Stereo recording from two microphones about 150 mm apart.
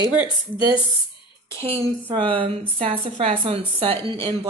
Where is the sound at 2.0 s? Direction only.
35° right (ahead or behind).